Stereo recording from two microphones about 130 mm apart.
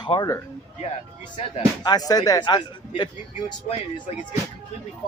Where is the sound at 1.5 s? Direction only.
30° left (ahead or behind).